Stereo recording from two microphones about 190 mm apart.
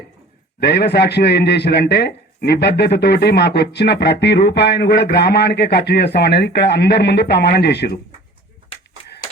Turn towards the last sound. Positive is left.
turn(degrees=60)  # may be behind; listen again after turning